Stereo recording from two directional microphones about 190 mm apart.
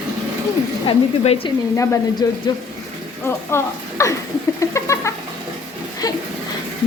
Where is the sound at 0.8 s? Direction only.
25° left (ahead or behind).